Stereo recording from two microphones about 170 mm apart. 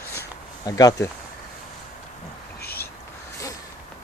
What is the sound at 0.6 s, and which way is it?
Speech, 20° left (ahead or behind).